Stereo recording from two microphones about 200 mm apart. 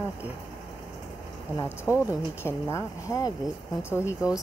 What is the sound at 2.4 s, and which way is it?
Speech, 15° left (ahead or behind).